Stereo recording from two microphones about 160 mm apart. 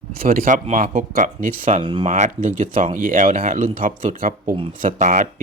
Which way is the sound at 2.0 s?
50° right (ahead or behind).